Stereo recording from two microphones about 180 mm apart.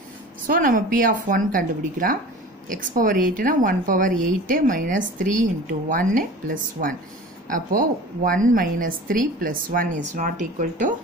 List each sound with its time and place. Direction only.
0.5 s a woman's voice: 50° right (ahead or behind)